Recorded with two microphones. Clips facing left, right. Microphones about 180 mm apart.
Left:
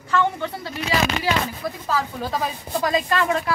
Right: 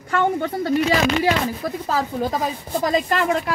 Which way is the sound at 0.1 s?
50° right (ahead or behind).